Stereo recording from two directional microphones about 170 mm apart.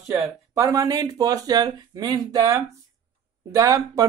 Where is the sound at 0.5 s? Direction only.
20° right (ahead or behind).